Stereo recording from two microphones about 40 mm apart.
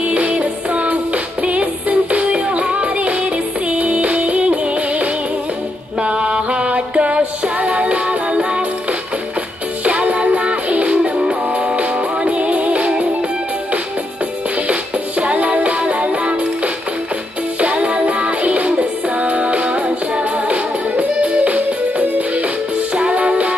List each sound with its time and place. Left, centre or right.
0.0 s music: right
9.8 s music: right
11.0 s music: centre
11.5 s music: right
14.7 s music: right